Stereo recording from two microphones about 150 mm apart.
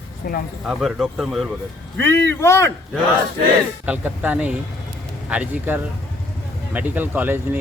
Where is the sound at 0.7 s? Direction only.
Centre (ahead or behind).